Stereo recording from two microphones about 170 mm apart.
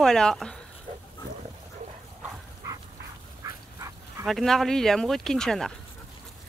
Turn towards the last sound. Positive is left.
turn(degrees=5)  # may be behind; listen again after turning